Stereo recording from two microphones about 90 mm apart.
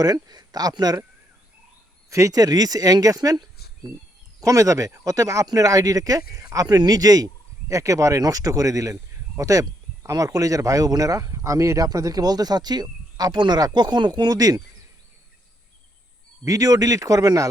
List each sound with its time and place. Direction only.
0.0 s speech: 45° right (ahead or behind)
2.0 s speech: 35° right (ahead or behind)
16.4 s speech: 40° right (ahead or behind)